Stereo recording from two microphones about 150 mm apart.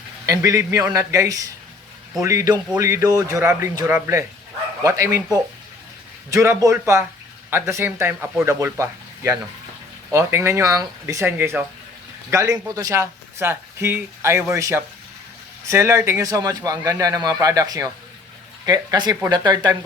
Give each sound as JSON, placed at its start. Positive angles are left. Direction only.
{"t": 0.3, "sound": "speech", "side_deg": -20}